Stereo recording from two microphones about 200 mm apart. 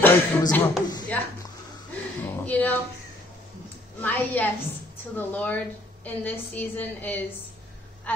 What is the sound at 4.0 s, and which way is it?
A woman's voice, 10° left (ahead or behind).